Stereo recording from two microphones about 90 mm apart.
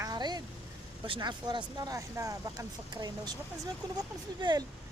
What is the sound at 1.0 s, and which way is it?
Speech, 65° right (ahead or behind).